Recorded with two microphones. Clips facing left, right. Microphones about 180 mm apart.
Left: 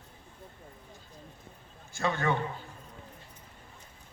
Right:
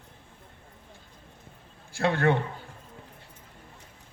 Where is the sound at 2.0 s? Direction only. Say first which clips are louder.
Right 5 dB; 75° right (ahead or behind).